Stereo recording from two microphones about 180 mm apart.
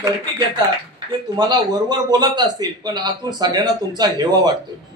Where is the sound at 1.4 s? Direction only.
25° right (ahead or behind).